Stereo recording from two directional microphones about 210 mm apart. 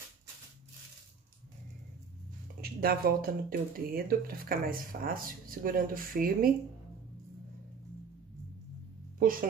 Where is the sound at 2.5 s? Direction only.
45° right (ahead or behind).